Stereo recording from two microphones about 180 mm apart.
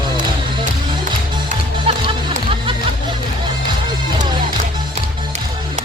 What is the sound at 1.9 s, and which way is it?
Music, 30° right (ahead or behind).